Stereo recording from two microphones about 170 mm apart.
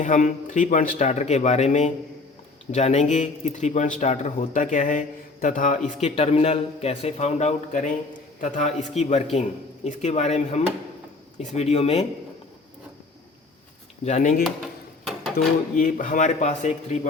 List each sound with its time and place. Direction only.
0.0 s a man's voice: 45° left (ahead or behind)
14.0 s speech: 45° left (ahead or behind)